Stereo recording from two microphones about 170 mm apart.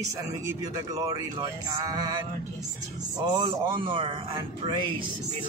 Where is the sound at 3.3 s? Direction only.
30° right (ahead or behind).